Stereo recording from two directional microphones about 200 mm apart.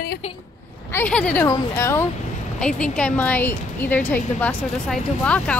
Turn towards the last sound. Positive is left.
turn(degrees=5)  # may be behind; listen again after turning